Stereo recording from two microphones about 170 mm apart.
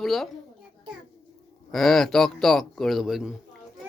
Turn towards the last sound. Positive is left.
turn(degrees=0)  # may be behind; listen again after turning